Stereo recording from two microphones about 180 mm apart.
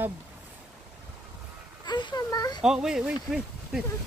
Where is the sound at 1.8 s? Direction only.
25° left (ahead or behind).